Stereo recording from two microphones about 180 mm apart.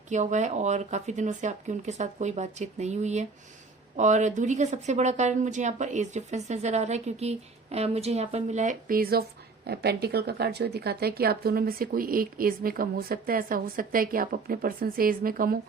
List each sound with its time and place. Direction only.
0.1 s speech: 40° right (ahead or behind)